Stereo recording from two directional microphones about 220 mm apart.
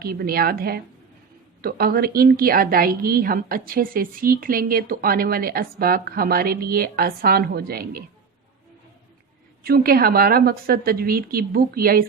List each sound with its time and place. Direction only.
0.0 s a woman's voice: 45° right (ahead or behind)
9.6 s a woman's voice: 45° right (ahead or behind)